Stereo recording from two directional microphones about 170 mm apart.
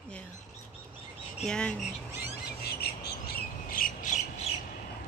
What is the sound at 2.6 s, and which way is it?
Squawk, 70° left (ahead or behind).